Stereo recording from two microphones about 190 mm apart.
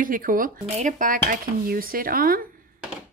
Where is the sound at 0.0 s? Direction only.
45° right (ahead or behind).